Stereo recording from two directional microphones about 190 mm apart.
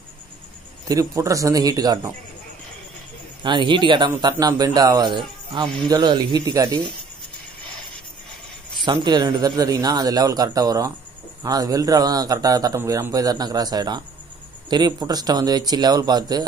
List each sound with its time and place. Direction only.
0.8 s a man's voice: 15° right (ahead or behind)
3.4 s a man's voice: 25° right (ahead or behind)
8.8 s a man's voice: 25° right (ahead or behind)